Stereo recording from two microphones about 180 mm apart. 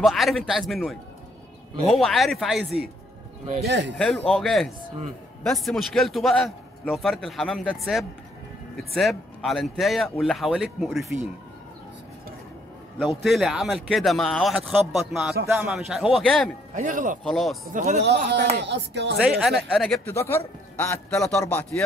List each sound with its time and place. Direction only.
0.0 s a man's voice: centre (ahead or behind)
3.6 s speech: 75° right (ahead or behind)
4.0 s a man's voice: 5° left (ahead or behind)
13.0 s a man's voice: centre (ahead or behind)
16.7 s speech: 50° right (ahead or behind)
17.2 s a man's voice: centre (ahead or behind)
17.7 s a man's voice: 40° right (ahead or behind)
18.6 s speech: 70° right (ahead or behind)
19.2 s a man's voice: centre (ahead or behind)
20.2 s a man's voice: 15° left (ahead or behind)